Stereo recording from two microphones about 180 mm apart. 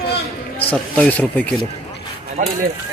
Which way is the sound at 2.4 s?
45° right (ahead or behind).